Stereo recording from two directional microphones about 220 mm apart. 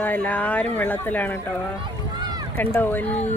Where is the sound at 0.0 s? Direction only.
5° left (ahead or behind).